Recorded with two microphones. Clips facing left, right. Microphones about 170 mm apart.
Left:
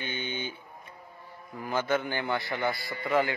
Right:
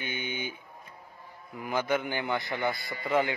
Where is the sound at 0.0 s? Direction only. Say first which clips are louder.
Even; 10° right (ahead or behind).